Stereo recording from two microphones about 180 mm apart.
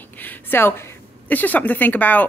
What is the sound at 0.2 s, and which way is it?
A woman's voice, 10° left (ahead or behind).